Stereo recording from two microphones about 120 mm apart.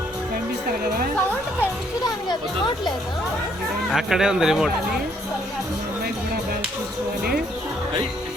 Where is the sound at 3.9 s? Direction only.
5° right (ahead or behind).